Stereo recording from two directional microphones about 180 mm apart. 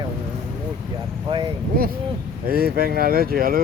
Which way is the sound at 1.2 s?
25° right (ahead or behind).